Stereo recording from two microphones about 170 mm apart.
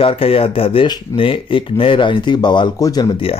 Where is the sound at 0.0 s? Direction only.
35° left (ahead or behind).